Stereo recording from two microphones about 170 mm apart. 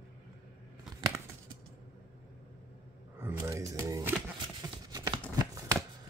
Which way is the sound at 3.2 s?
15° right (ahead or behind).